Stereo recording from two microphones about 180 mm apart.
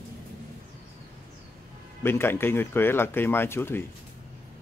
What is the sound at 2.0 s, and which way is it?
Speech, 10° left (ahead or behind).